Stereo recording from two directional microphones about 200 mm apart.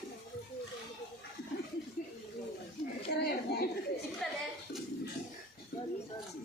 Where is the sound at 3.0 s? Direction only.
50° left (ahead or behind).